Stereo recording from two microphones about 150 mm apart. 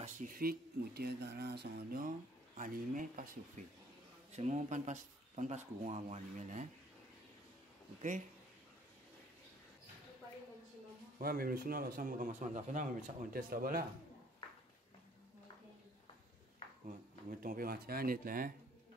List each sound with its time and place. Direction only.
0.0 s speech: 65° right (ahead or behind)
4.3 s speech: 50° right (ahead or behind)
11.1 s speech: 75° right (ahead or behind)
12.3 s speech: 55° right (ahead or behind); by 13.8 s 75° right (ahead or behind)
17.3 s speech: 70° right (ahead or behind)